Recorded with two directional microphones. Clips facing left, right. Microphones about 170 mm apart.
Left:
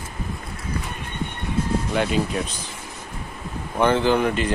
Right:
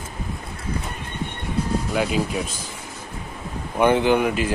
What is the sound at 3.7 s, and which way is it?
Speech, 15° right (ahead or behind).